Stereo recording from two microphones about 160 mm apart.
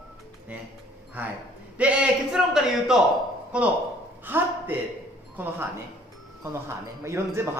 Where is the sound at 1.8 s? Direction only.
10° right (ahead or behind).